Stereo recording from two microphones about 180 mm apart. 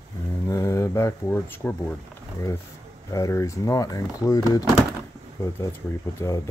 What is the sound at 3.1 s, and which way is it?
Speech, 15° left (ahead or behind).